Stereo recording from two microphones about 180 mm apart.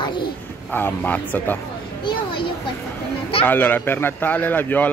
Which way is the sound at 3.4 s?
10° left (ahead or behind).